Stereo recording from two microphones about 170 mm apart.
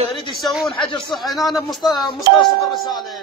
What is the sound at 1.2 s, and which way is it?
Speech, centre (ahead or behind).